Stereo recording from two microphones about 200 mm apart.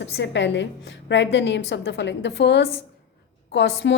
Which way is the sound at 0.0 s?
60° left (ahead or behind).